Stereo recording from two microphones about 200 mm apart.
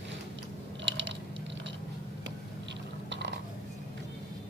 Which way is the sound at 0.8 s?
65° right (ahead or behind).